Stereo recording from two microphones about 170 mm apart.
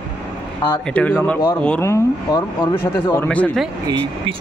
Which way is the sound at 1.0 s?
10° left (ahead or behind).